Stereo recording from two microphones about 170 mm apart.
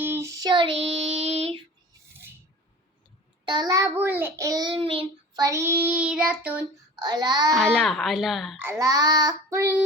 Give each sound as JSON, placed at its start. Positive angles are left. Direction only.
{"t": 0.0, "sound": "child singing", "side_deg": -15}
{"t": 3.4, "sound": "a child's voice", "side_deg": -25}
{"t": 7.0, "sound": "child singing", "side_deg": -25}
{"t": 7.5, "sound": "speech", "side_deg": 0}
{"t": 8.5, "sound": "a child's voice", "side_deg": -15}